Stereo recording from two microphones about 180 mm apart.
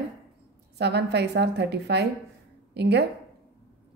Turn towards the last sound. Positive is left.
turn(degrees=-70)  # may be behind; listen again after turning